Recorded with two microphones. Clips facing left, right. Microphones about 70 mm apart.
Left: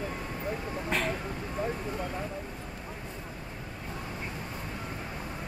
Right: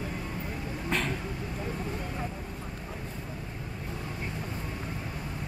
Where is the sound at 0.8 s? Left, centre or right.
Centre.